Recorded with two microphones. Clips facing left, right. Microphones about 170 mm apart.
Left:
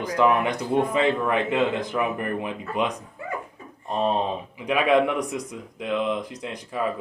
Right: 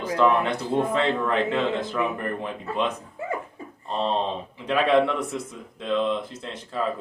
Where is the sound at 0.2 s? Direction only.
15° left (ahead or behind).